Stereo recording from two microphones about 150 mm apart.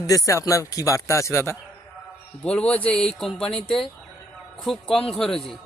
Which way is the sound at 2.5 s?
10° left (ahead or behind).